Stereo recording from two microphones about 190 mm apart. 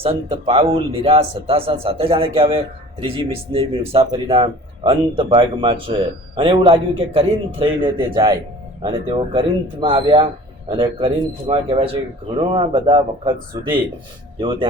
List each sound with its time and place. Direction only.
0.0 s speech: 30° right (ahead or behind)